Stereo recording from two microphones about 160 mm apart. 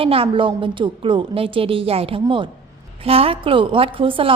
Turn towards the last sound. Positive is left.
turn(degrees=-35)  # may be behind; listen again after turning